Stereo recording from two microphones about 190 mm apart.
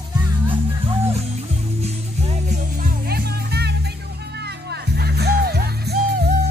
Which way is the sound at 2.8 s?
55° right (ahead or behind).